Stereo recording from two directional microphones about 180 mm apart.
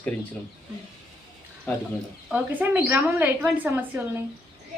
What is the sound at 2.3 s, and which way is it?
Speech, 10° right (ahead or behind).